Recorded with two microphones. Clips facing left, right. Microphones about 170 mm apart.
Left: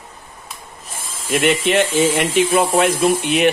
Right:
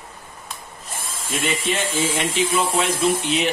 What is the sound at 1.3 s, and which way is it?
Speech, 65° left (ahead or behind).